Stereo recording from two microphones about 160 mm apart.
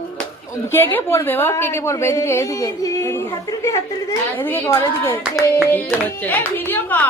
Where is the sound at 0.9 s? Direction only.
15° left (ahead or behind).